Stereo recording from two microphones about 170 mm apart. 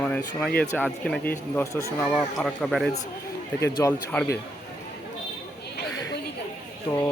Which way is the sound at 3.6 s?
20° left (ahead or behind).